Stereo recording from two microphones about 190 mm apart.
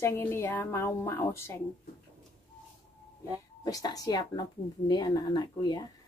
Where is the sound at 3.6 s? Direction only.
20° left (ahead or behind).